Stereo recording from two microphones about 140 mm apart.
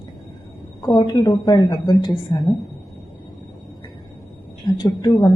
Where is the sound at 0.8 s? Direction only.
30° left (ahead or behind).